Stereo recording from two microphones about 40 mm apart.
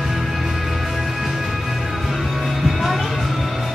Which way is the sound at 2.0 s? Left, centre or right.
Centre.